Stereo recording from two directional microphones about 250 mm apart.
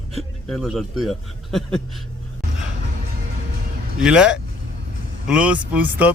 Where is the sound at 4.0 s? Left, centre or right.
Centre.